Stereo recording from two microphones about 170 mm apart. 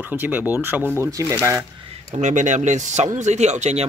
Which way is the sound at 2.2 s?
45° right (ahead or behind).